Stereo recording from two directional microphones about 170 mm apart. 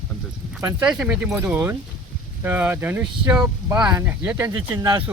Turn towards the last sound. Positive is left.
turn(degrees=-15)  # may be behind; listen again after turning